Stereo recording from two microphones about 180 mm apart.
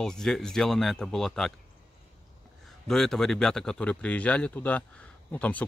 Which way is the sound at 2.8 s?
Centre (ahead or behind).